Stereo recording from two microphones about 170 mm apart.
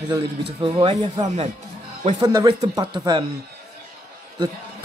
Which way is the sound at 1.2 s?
40° right (ahead or behind).